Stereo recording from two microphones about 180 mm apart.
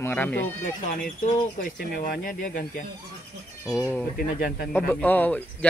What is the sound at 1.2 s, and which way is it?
Speech, 50° left (ahead or behind).